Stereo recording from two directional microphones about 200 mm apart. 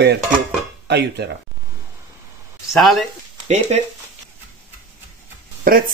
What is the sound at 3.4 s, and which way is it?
Speech, 35° right (ahead or behind).